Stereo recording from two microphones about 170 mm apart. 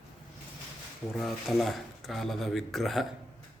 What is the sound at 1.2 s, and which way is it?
Speech, centre (ahead or behind).